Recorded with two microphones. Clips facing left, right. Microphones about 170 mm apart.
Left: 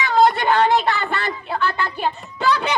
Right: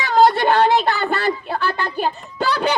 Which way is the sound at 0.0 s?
35° right (ahead or behind).